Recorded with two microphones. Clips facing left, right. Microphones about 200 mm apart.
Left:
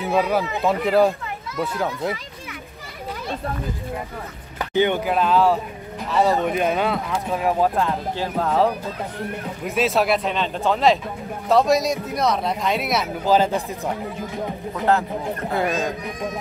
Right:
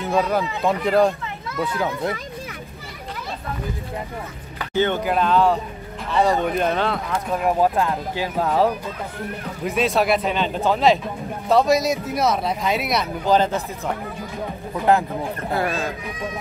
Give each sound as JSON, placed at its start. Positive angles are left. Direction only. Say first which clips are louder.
{"t": 0.0, "sound": "speech", "louder": "even", "side_deg": 5}
{"t": 4.7, "sound": "speech", "louder": "left 1 dB", "side_deg": 15}
{"t": 5.0, "sound": "speech", "louder": "even", "side_deg": 0}
{"t": 9.7, "sound": "speech", "louder": "even", "side_deg": 0}
{"t": 14.8, "sound": "speech", "louder": "right 2 dB", "side_deg": -15}
{"t": 15.5, "sound": "speech", "louder": "left 1 dB", "side_deg": 20}